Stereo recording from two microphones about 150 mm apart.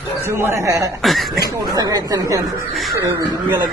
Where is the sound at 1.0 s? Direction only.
Centre (ahead or behind).